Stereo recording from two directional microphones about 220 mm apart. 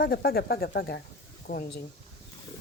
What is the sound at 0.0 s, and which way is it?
A woman's voice, 45° left (ahead or behind).